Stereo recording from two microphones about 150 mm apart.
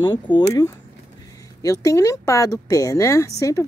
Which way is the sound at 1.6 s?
20° left (ahead or behind).